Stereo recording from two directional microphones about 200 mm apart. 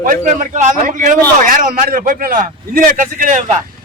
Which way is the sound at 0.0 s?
40° right (ahead or behind).